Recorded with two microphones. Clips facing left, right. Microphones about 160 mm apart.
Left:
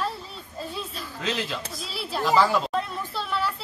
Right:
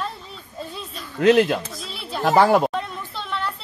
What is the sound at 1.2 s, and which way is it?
Speech, 60° right (ahead or behind).